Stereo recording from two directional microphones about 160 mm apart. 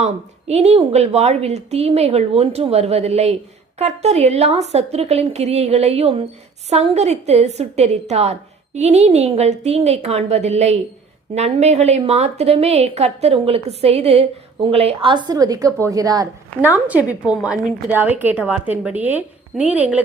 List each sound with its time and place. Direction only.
0.0 s a woman's voice: 45° right (ahead or behind); by 16.2 s 20° right (ahead or behind)
16.6 s a woman's voice: 10° right (ahead or behind)